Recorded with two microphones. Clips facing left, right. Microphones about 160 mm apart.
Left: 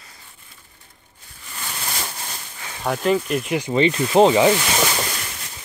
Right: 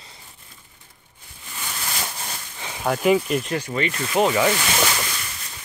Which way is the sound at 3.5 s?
15° left (ahead or behind).